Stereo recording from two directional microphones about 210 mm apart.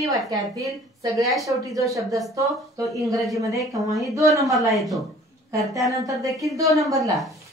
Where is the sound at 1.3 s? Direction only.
Centre (ahead or behind).